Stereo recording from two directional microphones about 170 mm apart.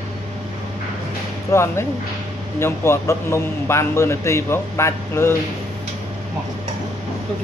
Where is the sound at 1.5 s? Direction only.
15° left (ahead or behind).